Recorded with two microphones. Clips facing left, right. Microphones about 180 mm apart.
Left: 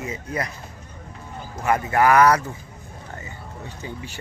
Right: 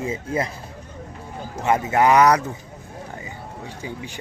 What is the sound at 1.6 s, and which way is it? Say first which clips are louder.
Speech: right 1 dB; 20° right (ahead or behind).